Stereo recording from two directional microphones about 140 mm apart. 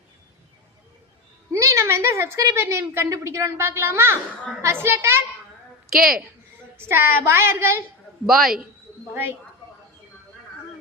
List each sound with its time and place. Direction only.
1.5 s a woman's voice: 20° right (ahead or behind)
6.7 s a woman's voice: 20° right (ahead or behind)
8.3 s a man's voice: centre (ahead or behind)
9.1 s a woman's voice: 15° right (ahead or behind)